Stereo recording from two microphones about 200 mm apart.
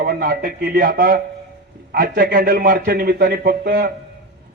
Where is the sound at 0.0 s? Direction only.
50° right (ahead or behind).